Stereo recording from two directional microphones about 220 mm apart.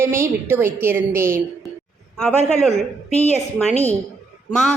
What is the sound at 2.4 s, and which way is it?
Speech, centre (ahead or behind).